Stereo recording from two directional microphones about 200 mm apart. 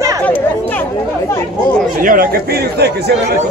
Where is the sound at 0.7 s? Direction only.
10° left (ahead or behind).